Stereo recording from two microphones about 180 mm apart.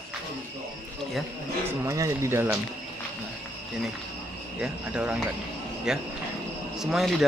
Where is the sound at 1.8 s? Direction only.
15° right (ahead or behind).